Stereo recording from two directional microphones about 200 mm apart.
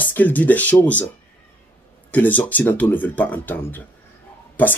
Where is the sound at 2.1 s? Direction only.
10° left (ahead or behind).